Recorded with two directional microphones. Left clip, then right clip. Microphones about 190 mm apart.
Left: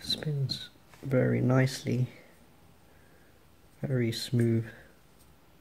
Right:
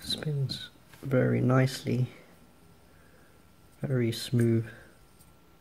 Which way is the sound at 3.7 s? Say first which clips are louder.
Right 1 dB; centre (ahead or behind).